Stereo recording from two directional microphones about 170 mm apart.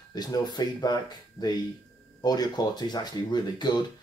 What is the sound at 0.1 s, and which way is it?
Speech, 25° left (ahead or behind).